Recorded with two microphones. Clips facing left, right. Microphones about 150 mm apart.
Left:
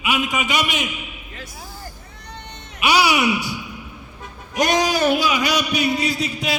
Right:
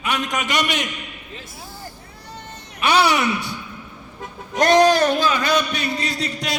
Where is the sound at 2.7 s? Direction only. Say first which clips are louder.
Even; 10° left (ahead or behind).